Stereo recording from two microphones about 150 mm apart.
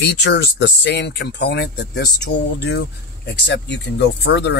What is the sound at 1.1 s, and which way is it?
Speech, 90° left.